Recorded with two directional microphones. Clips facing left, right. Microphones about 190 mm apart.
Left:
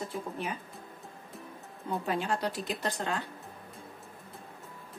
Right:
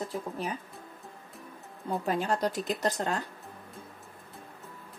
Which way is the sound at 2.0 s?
40° right (ahead or behind).